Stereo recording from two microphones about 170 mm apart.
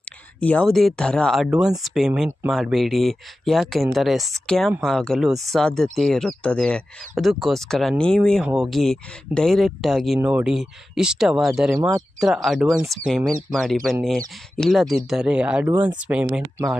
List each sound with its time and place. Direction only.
0.3 s speech: 10° left (ahead or behind)
11.8 s speech: 15° right (ahead or behind)
12.2 s speech: centre (ahead or behind)